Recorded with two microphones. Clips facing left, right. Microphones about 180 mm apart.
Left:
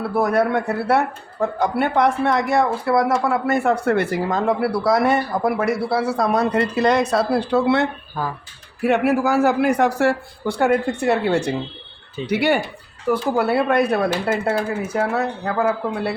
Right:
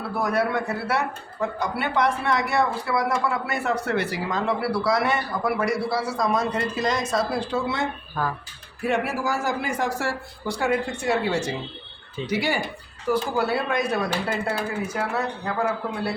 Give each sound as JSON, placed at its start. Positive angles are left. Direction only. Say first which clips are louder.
{"t": 0.2, "sound": "speech", "louder": "left 5 dB", "side_deg": 55}
{"t": 8.9, "sound": "speech", "louder": "left 7 dB", "side_deg": 60}